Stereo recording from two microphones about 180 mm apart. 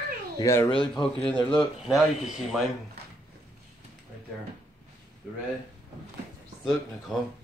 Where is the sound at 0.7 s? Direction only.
25° left (ahead or behind).